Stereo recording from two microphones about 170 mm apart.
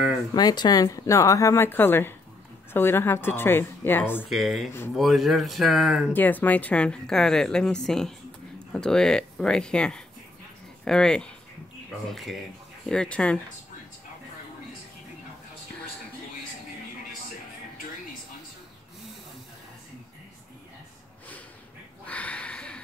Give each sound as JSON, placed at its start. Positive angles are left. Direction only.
{"t": 0.3, "sound": "a woman's voice", "side_deg": 25}
{"t": 4.3, "sound": "a woman's voice", "side_deg": 0}
{"t": 6.1, "sound": "a woman's voice", "side_deg": 10}
{"t": 22.0, "sound": "a sound", "side_deg": 10}